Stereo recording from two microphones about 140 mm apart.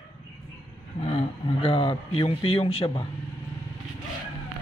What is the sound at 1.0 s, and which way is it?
A man's voice, 45° left (ahead or behind).